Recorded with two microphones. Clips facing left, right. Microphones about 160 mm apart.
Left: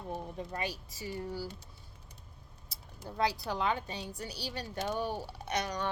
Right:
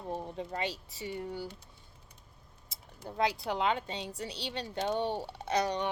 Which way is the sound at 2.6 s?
20° right (ahead or behind).